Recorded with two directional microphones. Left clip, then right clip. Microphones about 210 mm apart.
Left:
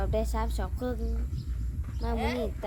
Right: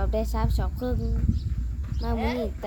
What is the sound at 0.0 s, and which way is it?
Speech, 5° left (ahead or behind).